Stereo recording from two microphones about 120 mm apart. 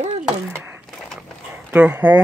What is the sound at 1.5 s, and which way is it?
Speech, 20° right (ahead or behind).